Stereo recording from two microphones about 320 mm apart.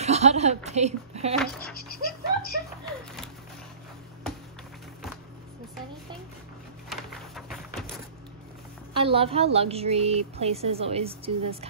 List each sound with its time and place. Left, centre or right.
0.0 s a woman's voice: centre
1.6 s a sound: left
6.9 s music: centre
8.9 s a woman's voice: centre